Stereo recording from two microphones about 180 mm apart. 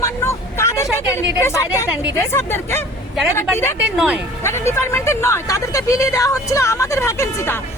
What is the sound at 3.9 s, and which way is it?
Speech, centre (ahead or behind).